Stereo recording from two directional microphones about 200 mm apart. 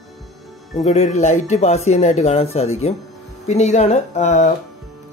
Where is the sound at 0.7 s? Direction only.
35° left (ahead or behind).